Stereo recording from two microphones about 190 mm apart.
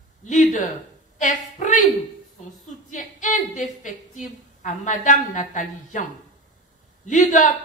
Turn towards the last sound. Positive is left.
turn(degrees=40)  # may be behind; listen again after turning